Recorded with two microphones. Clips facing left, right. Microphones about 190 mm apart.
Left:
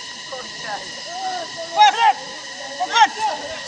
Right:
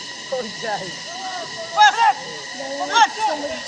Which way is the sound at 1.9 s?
25° left (ahead or behind).